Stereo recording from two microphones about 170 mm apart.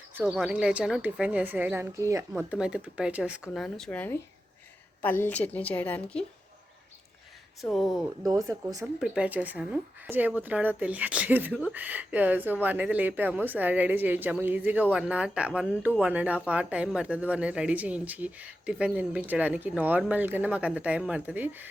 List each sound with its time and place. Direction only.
0.1 s speech: 5° right (ahead or behind)
2.3 s a woman's voice: 5° right (ahead or behind); by 6.2 s 10° left (ahead or behind)
7.7 s speech: centre (ahead or behind)
8.2 s speech: 20° right (ahead or behind)
9.0 s speech: 5° right (ahead or behind)